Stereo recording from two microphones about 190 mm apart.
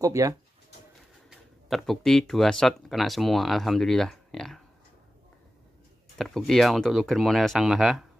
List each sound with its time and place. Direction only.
0.0 s speech: 15° right (ahead or behind)
1.3 s speech: centre (ahead or behind)
6.1 s speech: centre (ahead or behind)